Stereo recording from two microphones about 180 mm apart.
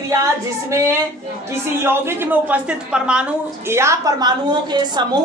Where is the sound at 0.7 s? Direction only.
15° right (ahead or behind).